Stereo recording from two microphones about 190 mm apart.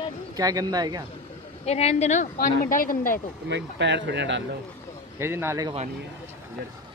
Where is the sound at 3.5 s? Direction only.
70° right (ahead or behind).